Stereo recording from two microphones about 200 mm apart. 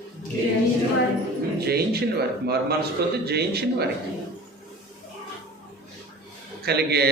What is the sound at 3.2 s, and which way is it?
Speech, 55° right (ahead or behind).